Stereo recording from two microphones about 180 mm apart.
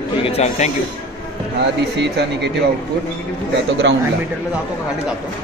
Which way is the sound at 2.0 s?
70° right (ahead or behind).